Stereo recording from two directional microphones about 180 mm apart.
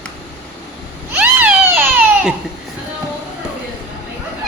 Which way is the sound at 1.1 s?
10° right (ahead or behind).